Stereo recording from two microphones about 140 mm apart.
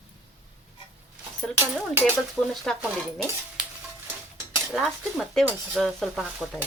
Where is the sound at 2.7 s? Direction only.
5° left (ahead or behind).